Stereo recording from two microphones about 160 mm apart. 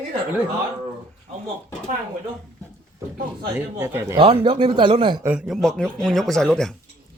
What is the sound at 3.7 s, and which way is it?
Speech, 15° right (ahead or behind).